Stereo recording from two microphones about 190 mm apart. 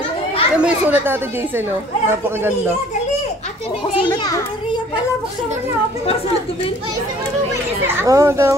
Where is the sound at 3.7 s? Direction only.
30° left (ahead or behind).